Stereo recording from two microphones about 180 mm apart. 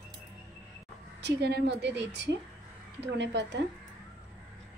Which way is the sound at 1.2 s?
70° right (ahead or behind).